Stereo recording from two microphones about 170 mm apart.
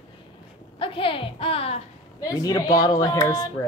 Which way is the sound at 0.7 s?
30° left (ahead or behind).